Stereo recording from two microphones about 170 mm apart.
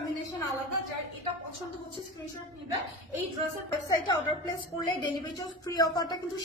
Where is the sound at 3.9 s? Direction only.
25° left (ahead or behind).